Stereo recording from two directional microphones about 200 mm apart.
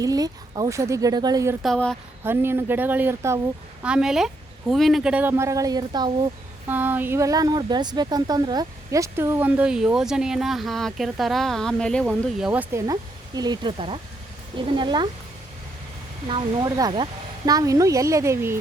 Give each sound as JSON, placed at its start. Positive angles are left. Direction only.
{"t": 0.0, "sound": "speech", "side_deg": -20}
{"t": 1.6, "sound": "speech", "side_deg": 5}
{"t": 2.2, "sound": "speech", "side_deg": -10}
{"t": 6.7, "sound": "speech", "side_deg": -10}
{"t": 12.0, "sound": "speech", "side_deg": -5}
{"t": 16.3, "sound": "speech", "side_deg": -20}